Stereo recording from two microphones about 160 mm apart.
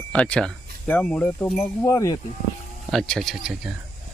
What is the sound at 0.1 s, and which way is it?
Speech, 5° left (ahead or behind).